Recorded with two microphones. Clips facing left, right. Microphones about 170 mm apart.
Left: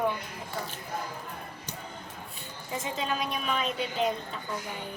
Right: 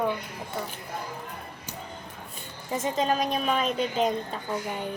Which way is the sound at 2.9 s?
40° right (ahead or behind).